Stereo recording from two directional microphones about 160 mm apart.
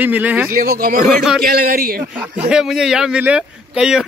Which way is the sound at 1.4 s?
70° right (ahead or behind).